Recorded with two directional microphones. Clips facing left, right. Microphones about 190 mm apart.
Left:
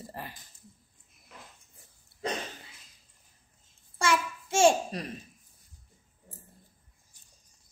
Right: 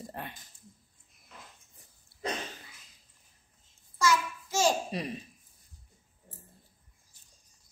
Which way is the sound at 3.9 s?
30° left (ahead or behind).